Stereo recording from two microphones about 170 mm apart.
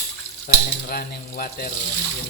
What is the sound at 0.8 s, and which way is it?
Speech, 60° left (ahead or behind).